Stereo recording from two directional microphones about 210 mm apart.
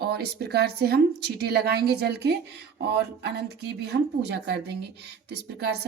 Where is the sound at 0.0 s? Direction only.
50° right (ahead or behind).